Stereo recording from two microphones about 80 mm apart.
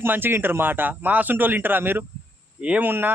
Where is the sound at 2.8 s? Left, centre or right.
Right.